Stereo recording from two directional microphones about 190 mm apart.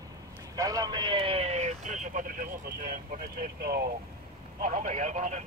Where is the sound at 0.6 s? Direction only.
20° right (ahead or behind).